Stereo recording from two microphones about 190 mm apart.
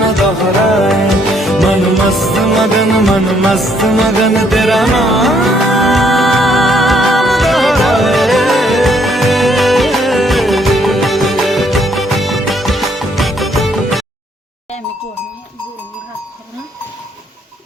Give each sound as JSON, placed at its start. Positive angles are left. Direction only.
{"t": 0.0, "sound": "music", "side_deg": 0}